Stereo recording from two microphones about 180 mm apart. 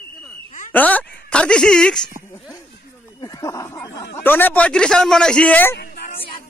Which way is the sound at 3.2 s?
20° left (ahead or behind).